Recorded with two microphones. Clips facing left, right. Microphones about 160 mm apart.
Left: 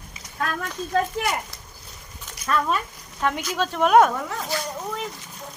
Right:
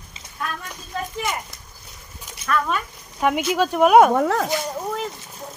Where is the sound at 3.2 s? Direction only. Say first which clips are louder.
Right 5 dB; 10° right (ahead or behind).